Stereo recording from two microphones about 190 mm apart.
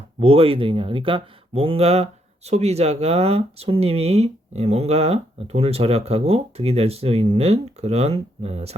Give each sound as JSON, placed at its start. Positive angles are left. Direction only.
{"t": 0.2, "sound": "speech", "side_deg": -30}